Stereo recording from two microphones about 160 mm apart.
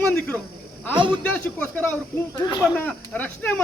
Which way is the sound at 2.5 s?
25° left (ahead or behind).